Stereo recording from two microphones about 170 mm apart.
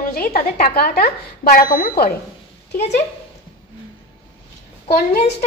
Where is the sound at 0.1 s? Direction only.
60° left (ahead or behind).